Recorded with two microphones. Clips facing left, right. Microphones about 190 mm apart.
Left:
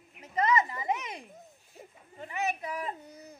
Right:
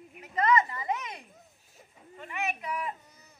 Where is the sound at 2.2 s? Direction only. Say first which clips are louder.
Left 2 dB; 35° left (ahead or behind).